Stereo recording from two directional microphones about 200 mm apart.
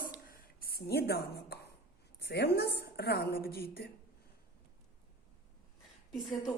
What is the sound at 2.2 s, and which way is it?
A woman's voice, 55° left (ahead or behind).